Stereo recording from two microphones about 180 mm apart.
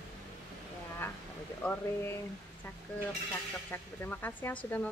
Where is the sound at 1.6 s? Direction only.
10° left (ahead or behind).